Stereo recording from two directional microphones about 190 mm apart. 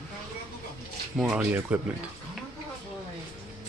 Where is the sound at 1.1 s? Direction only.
5° right (ahead or behind).